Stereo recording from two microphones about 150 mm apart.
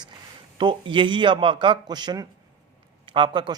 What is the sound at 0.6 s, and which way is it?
Speech, 35° right (ahead or behind).